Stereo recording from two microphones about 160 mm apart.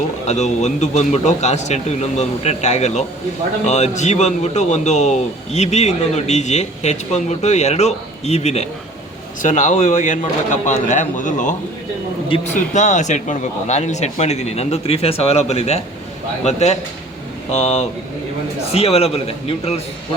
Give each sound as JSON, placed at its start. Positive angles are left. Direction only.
{"t": 0.3, "sound": "a man's voice", "side_deg": 45}
{"t": 12.3, "sound": "a man's voice", "side_deg": 35}
{"t": 12.7, "sound": "a man's voice", "side_deg": 50}